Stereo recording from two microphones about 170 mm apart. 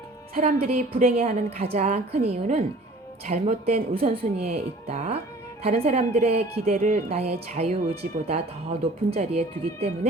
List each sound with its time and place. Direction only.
0.3 s a woman's voice: 50° right (ahead or behind)
1.3 s speech: 35° right (ahead or behind)